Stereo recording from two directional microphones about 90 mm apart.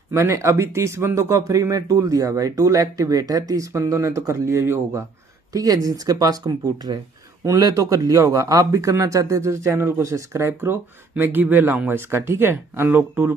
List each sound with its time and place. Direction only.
0.1 s a man's voice: 30° right (ahead or behind)
5.5 s speech: 45° right (ahead or behind)
7.6 s a man's voice: 40° right (ahead or behind)